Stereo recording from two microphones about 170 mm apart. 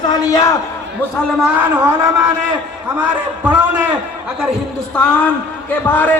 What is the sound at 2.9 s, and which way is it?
Speech, 10° right (ahead or behind).